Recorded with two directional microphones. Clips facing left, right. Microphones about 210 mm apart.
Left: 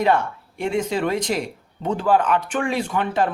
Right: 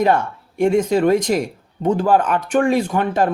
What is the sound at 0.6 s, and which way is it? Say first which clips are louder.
Speech: right 7 dB; 45° right (ahead or behind).